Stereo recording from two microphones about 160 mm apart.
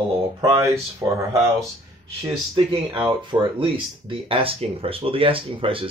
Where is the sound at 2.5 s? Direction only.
30° right (ahead or behind).